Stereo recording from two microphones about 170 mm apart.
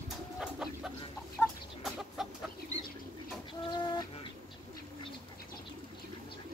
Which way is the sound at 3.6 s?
25° left (ahead or behind).